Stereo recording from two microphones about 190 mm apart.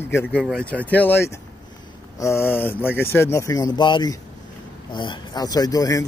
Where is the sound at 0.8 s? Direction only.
10° left (ahead or behind).